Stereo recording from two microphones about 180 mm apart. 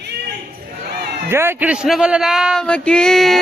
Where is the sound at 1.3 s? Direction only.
10° right (ahead or behind).